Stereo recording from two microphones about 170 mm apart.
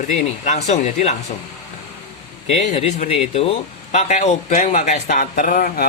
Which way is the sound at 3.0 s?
35° left (ahead or behind).